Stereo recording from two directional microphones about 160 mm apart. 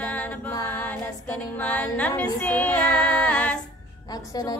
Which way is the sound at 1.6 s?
10° left (ahead or behind).